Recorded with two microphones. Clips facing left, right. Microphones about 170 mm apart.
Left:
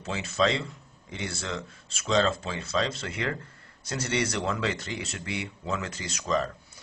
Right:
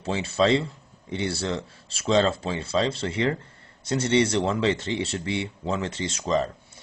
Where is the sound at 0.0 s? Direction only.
30° right (ahead or behind).